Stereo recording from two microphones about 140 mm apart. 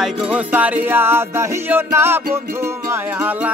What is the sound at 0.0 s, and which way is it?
Music, 10° right (ahead or behind).